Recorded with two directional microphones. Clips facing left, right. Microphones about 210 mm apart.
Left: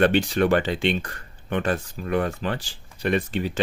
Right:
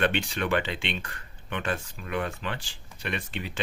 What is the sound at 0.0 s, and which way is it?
Speech, 40° left (ahead or behind).